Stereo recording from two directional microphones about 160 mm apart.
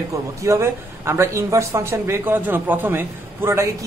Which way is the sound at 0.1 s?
20° right (ahead or behind).